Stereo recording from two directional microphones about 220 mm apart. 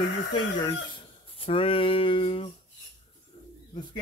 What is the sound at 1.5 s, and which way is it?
Speech, 25° left (ahead or behind).